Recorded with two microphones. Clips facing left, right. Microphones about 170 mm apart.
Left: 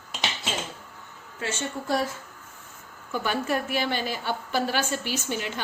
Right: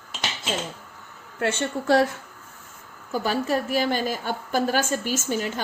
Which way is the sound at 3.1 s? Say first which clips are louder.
Right 3 dB; 35° right (ahead or behind).